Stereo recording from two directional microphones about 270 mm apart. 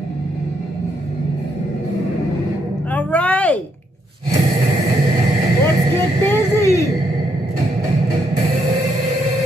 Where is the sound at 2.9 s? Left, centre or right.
Centre.